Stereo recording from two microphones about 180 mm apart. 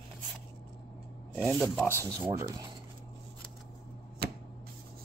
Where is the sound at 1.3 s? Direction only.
Centre (ahead or behind).